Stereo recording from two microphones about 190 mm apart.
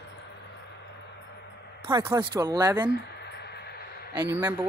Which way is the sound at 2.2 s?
20° right (ahead or behind).